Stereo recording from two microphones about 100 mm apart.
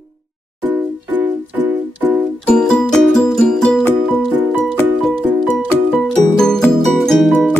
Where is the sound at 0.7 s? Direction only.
20° right (ahead or behind).